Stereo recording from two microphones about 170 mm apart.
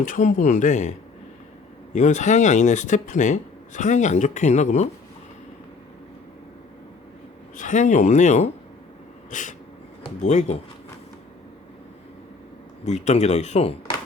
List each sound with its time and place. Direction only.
0.0 s speech: 45° left (ahead or behind)
7.5 s speech: 45° left (ahead or behind)
12.8 s speech: 45° left (ahead or behind)